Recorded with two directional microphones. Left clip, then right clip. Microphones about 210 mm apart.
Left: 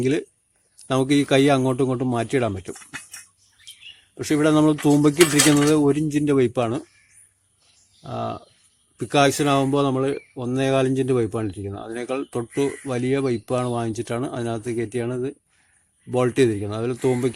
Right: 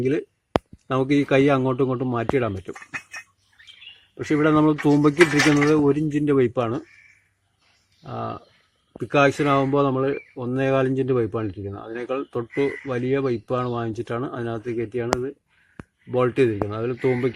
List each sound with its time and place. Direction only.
0.0 s speech: 20° left (ahead or behind)
4.2 s speech: 15° left (ahead or behind)
8.0 s speech: 20° left (ahead or behind)